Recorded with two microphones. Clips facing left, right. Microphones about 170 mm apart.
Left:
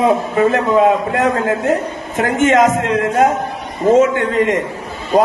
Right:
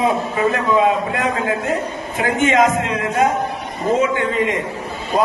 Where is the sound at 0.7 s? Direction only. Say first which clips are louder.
Left 4 dB; 50° left (ahead or behind).